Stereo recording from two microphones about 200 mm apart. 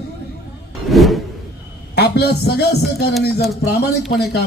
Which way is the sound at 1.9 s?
55° left (ahead or behind).